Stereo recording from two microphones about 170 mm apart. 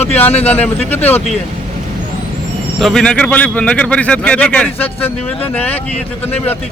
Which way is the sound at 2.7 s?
Centre (ahead or behind).